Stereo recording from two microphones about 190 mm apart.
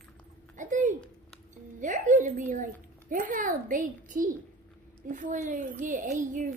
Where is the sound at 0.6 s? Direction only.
40° right (ahead or behind).